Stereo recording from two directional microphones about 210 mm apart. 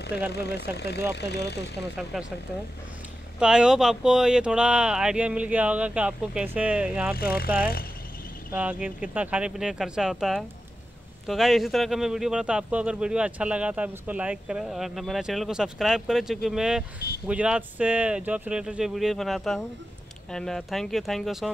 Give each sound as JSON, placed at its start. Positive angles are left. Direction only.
{"t": 0.3, "sound": "speech", "side_deg": 50}
{"t": 2.1, "sound": "a man's voice", "side_deg": 0}
{"t": 3.3, "sound": "a man's voice", "side_deg": -5}
{"t": 7.5, "sound": "speech", "side_deg": 45}
{"t": 8.5, "sound": "a man's voice", "side_deg": -5}